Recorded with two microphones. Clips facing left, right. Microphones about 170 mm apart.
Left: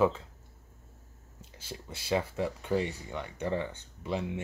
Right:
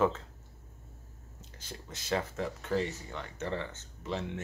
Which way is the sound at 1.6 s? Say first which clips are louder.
Left 3 dB; 10° left (ahead or behind).